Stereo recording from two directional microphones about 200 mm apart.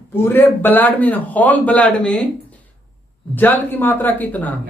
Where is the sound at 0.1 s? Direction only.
10° left (ahead or behind).